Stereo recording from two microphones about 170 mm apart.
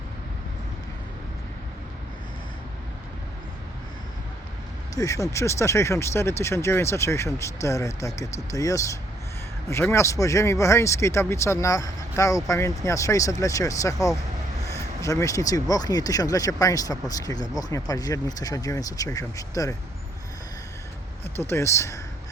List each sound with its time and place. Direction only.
4.9 s speech: 20° left (ahead or behind)
21.3 s speech: 15° left (ahead or behind)